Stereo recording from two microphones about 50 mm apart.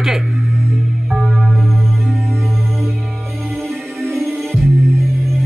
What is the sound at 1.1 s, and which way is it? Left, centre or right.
Music, centre.